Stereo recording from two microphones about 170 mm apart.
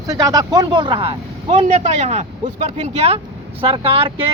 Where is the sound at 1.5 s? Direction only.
45° right (ahead or behind).